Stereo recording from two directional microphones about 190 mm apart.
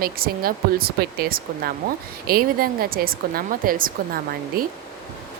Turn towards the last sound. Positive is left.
turn(degrees=-50)  # may be behind; listen again after turning